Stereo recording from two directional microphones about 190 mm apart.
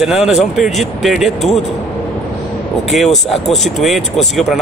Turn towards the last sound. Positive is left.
turn(degrees=0)  # may be behind; listen again after turning